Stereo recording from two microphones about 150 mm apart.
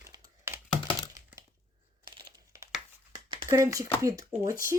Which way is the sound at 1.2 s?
25° right (ahead or behind).